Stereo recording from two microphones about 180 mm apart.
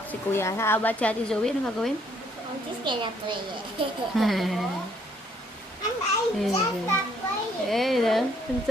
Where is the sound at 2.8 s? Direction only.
25° right (ahead or behind).